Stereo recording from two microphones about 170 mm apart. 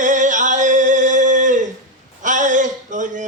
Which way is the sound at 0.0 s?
45° right (ahead or behind).